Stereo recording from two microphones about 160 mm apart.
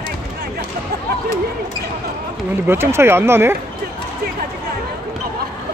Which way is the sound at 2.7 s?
15° right (ahead or behind).